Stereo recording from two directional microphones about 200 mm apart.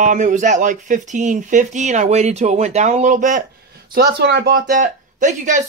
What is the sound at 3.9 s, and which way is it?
Speech, 55° right (ahead or behind).